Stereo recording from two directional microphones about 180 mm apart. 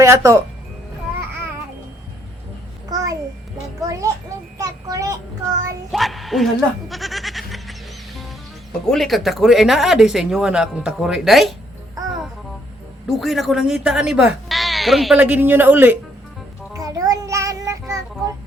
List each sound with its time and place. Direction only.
0.0 s speech: 15° right (ahead or behind)
2.9 s a sound: 20° right (ahead or behind)
3.8 s a child's voice: 20° right (ahead or behind)
4.5 s child singing: 20° right (ahead or behind)
5.9 s a sound: centre (ahead or behind)
8.9 s speech: centre (ahead or behind)
13.1 s speech: centre (ahead or behind)
16.7 s child singing: 20° right (ahead or behind)